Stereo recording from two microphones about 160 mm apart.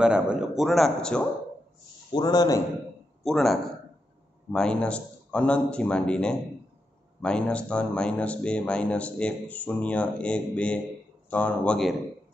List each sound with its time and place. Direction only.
0.0 s speech: 5° right (ahead or behind)
2.1 s a man's voice: 25° left (ahead or behind)
3.3 s speech: centre (ahead or behind)